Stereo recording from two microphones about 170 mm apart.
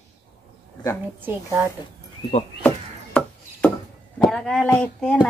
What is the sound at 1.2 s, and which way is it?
Speech, 15° right (ahead or behind).